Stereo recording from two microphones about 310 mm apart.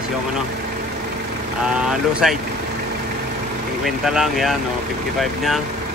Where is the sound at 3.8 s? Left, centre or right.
Centre.